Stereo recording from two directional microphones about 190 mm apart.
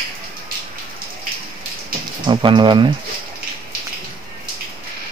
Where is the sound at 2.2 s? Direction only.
25° right (ahead or behind).